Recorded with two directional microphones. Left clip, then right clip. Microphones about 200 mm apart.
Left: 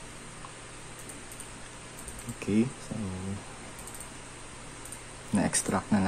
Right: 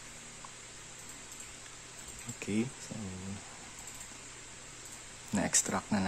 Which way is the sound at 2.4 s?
10° right (ahead or behind).